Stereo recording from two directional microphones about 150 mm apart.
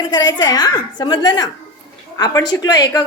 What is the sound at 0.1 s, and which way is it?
A woman's voice, 30° left (ahead or behind).